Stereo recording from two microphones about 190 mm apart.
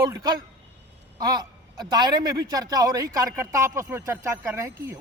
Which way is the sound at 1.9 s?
20° right (ahead or behind).